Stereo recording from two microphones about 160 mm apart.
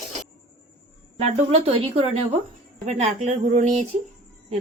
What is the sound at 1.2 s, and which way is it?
Speech, 40° right (ahead or behind).